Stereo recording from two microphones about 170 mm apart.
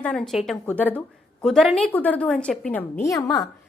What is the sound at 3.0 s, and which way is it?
Speech, 20° left (ahead or behind).